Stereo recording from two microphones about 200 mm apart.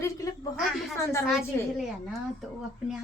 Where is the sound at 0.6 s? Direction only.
Centre (ahead or behind).